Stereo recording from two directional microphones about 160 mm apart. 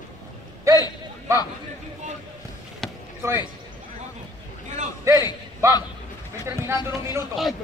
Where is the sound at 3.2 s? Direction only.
15° right (ahead or behind).